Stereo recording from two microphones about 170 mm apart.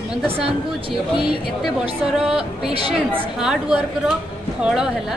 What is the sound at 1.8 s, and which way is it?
Speech, 35° right (ahead or behind).